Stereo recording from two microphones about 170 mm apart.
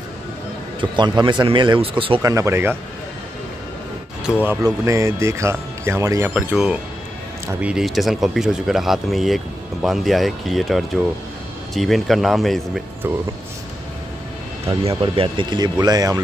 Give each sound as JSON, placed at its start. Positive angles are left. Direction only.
{"t": 0.7, "sound": "a man's voice", "side_deg": -25}
{"t": 2.2, "sound": "speech", "side_deg": -15}
{"t": 4.3, "sound": "speech", "side_deg": -10}
{"t": 14.8, "sound": "a man's voice", "side_deg": -35}